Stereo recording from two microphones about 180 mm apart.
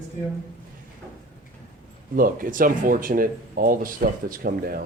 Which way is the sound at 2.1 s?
50° right (ahead or behind).